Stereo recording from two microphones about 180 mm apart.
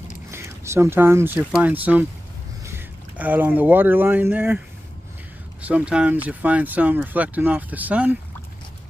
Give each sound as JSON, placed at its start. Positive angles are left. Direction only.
{"t": 0.3, "sound": "speech", "side_deg": -15}